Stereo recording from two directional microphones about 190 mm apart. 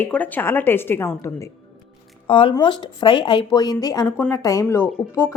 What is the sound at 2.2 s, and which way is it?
A woman's voice, 25° left (ahead or behind).